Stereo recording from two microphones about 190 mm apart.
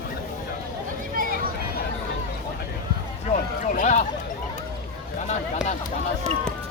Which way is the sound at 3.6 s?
40° left (ahead or behind).